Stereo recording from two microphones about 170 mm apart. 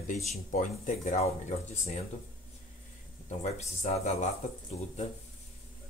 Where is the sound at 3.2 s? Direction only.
40° left (ahead or behind).